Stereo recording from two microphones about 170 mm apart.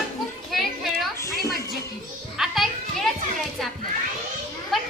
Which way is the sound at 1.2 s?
20° left (ahead or behind).